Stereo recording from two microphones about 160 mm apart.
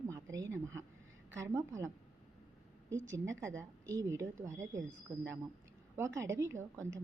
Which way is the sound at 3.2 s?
20° right (ahead or behind).